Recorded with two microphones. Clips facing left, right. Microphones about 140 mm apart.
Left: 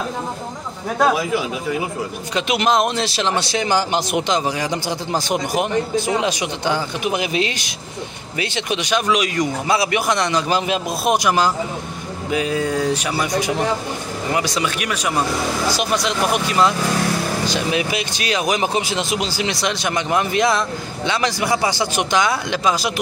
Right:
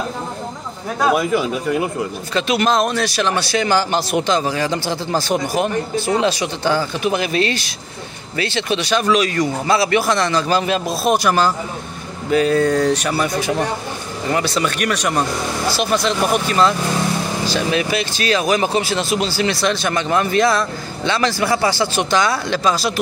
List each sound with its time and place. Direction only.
1.1 s speech: centre (ahead or behind)
2.3 s speech: 15° left (ahead or behind)